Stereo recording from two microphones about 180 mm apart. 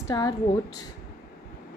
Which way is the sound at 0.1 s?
20° left (ahead or behind).